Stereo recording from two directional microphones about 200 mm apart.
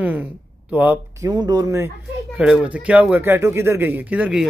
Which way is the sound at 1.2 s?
20° right (ahead or behind).